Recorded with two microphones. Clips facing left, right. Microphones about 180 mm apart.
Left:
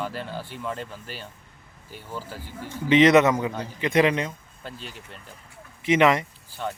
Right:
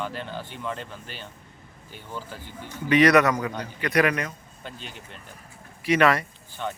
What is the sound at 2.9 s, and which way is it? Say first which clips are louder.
A man's voice: left 2 dB; 25° left (ahead or behind).